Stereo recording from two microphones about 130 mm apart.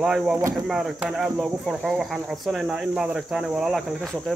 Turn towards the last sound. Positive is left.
turn(degrees=0)  # may be behind; listen again after turning